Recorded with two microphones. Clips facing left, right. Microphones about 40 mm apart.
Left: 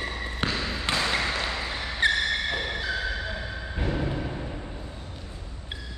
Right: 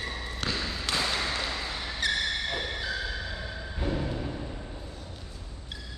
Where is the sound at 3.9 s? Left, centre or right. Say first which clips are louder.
Left 3 dB; left.